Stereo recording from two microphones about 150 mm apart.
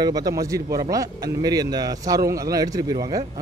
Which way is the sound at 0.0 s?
25° right (ahead or behind).